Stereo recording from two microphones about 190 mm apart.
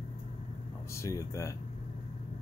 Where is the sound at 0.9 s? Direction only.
15° left (ahead or behind).